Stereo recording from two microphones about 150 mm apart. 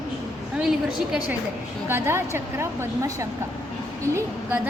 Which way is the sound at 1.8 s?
15° right (ahead or behind).